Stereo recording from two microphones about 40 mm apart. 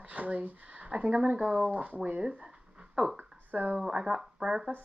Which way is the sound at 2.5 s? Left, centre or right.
Right.